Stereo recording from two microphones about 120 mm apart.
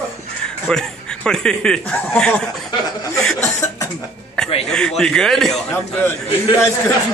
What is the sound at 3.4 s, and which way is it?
Cough, 25° left (ahead or behind).